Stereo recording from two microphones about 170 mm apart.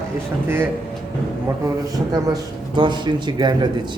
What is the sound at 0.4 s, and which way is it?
Speech, 10° right (ahead or behind).